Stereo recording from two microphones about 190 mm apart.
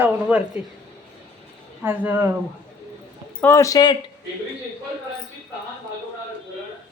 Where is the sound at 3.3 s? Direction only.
15° left (ahead or behind).